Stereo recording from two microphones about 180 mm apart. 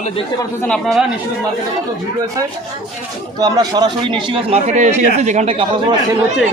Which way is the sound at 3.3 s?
20° right (ahead or behind).